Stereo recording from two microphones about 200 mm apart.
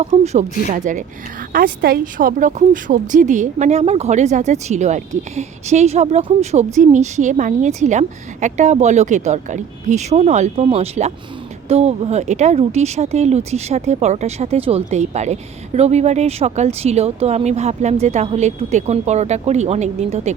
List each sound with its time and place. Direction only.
0.0 s speech: 35° right (ahead or behind)